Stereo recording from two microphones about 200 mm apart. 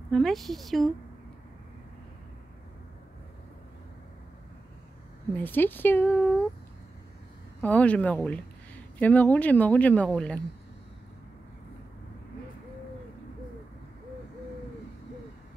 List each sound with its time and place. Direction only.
0.1 s a woman's voice: centre (ahead or behind)
5.3 s speech: 10° left (ahead or behind)
7.6 s speech: 5° left (ahead or behind)